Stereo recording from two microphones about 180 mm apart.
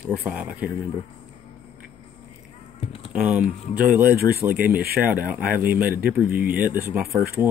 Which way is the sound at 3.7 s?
10° right (ahead or behind).